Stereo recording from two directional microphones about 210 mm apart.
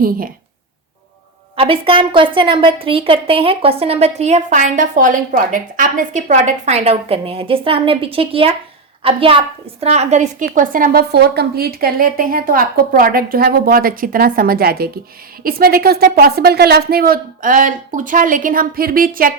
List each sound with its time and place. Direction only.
1.5 s a woman's voice: 25° right (ahead or behind); by 19.3 s 45° right (ahead or behind)